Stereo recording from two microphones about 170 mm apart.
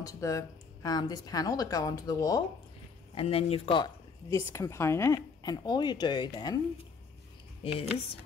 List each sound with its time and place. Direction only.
0.0 s speech: 20° left (ahead or behind)
3.2 s speech: 35° left (ahead or behind)
7.6 s a woman's voice: 35° left (ahead or behind)